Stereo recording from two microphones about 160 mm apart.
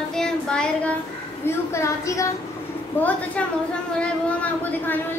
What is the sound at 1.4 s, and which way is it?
Speech, 15° left (ahead or behind).